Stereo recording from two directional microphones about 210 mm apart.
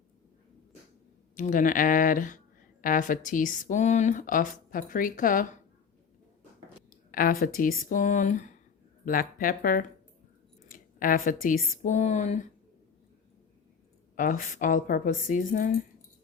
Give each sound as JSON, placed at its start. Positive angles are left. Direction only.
{"t": 1.4, "sound": "a woman's voice", "side_deg": 40}
{"t": 6.9, "sound": "a woman's voice", "side_deg": 40}
{"t": 14.2, "sound": "a woman's voice", "side_deg": 40}